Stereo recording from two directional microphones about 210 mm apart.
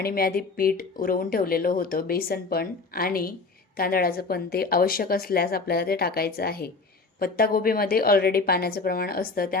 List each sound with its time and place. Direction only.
0.0 s speech: 45° left (ahead or behind)